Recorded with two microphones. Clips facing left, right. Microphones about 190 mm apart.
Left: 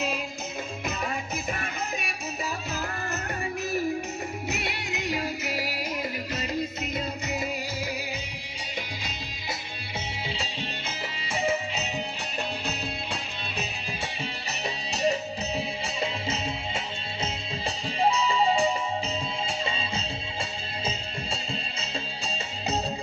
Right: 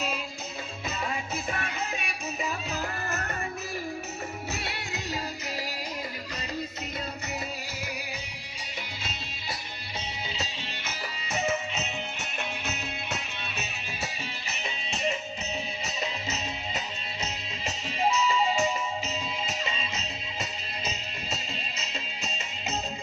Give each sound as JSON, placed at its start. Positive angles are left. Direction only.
{"t": 4.5, "sound": "music", "side_deg": 15}
{"t": 10.2, "sound": "music", "side_deg": 30}